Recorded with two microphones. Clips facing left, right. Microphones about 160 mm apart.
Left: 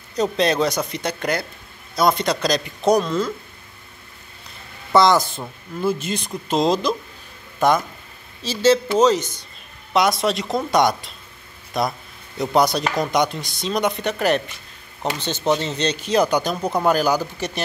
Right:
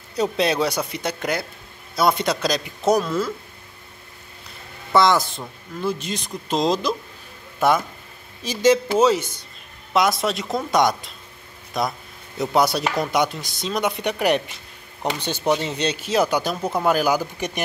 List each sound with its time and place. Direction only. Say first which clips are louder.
0.1 s speech: left 1 dB; 5° right (ahead or behind)
4.9 s speech: left 2 dB; centre (ahead or behind)
8.4 s speech: left 1 dB; 15° right (ahead or behind)
13.9 s speech: even; 15° right (ahead or behind)